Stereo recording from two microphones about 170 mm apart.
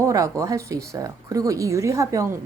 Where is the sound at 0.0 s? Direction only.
20° right (ahead or behind).